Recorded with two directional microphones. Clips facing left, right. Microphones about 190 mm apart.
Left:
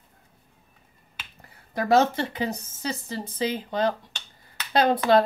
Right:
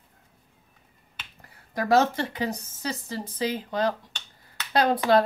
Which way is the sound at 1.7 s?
25° left (ahead or behind).